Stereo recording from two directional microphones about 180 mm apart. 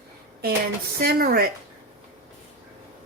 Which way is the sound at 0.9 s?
55° right (ahead or behind).